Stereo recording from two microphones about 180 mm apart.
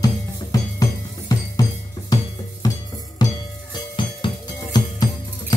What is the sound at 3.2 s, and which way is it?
Music, 25° left (ahead or behind).